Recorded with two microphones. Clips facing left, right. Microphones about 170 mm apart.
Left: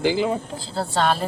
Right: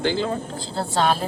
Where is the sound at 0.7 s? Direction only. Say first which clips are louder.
Even; centre (ahead or behind).